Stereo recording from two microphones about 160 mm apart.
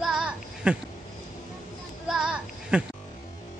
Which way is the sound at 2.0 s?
5° right (ahead or behind).